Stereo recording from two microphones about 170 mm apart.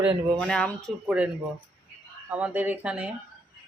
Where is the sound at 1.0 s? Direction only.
5° right (ahead or behind).